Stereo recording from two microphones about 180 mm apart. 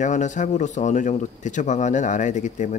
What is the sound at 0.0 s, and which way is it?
Speech, 40° left (ahead or behind).